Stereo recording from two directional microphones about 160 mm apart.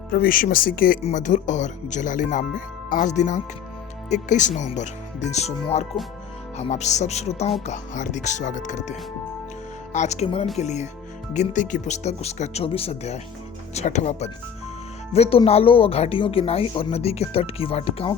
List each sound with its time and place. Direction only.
0.1 s speech: 60° left (ahead or behind)
1.0 s speech: 50° left (ahead or behind)